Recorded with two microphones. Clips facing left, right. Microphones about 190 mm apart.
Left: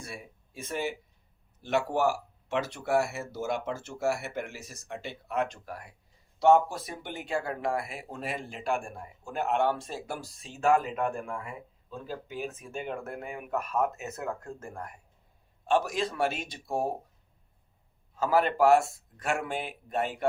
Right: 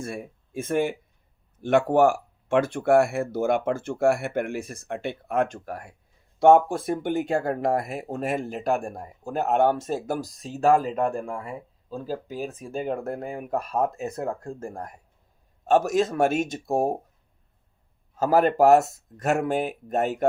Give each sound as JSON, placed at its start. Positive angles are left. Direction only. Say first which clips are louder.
{"t": 0.0, "sound": "speech", "louder": "right 10 dB", "side_deg": -50}
{"t": 18.2, "sound": "speech", "louder": "right 5 dB", "side_deg": -45}